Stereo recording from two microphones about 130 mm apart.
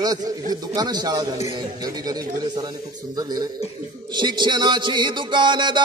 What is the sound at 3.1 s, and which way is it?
Music, 30° right (ahead or behind).